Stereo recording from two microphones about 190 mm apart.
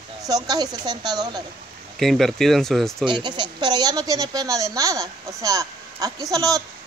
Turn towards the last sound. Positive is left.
turn(degrees=-20)  # may be behind; listen again after turning